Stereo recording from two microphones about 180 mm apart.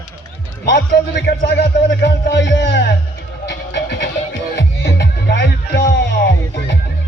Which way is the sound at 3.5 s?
70° left (ahead or behind).